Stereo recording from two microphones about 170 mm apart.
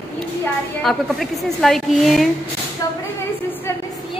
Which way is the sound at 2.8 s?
20° left (ahead or behind).